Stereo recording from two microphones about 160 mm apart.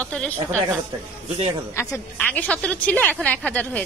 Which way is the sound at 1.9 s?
10° left (ahead or behind).